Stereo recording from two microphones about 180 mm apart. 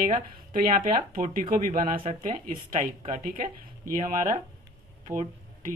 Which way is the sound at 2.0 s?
30° right (ahead or behind).